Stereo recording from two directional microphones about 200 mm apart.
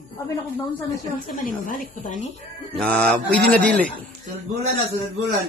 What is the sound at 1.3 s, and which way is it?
Speech, 40° left (ahead or behind).